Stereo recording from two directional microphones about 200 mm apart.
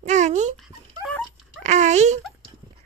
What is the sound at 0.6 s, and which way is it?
Dog, centre (ahead or behind).